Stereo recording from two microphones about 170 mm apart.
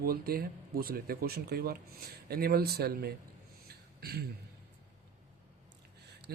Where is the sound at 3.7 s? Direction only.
70° right (ahead or behind).